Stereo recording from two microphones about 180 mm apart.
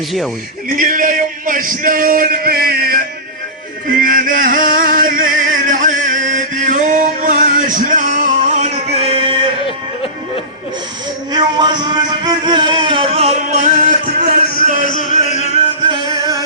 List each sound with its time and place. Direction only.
0.8 s a man's voice: 50° right (ahead or behind)
4.0 s music: 50° right (ahead or behind); by 9.5 s 30° right (ahead or behind)
11.3 s music: 25° right (ahead or behind); by 14.3 s 40° right (ahead or behind)
14.8 s music: 45° left (ahead or behind)
15.9 s music: 20° right (ahead or behind)